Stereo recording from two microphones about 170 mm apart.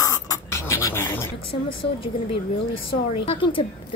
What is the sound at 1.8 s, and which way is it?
A woman's voice, 30° left (ahead or behind).